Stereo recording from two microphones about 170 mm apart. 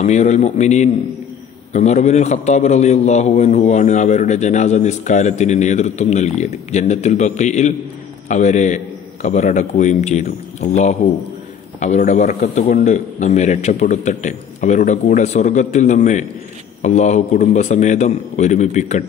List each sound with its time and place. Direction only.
0.0 s a man's voice: 45° left (ahead or behind)